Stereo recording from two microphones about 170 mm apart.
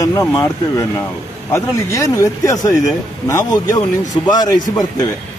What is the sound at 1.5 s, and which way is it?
Speech, 20° left (ahead or behind).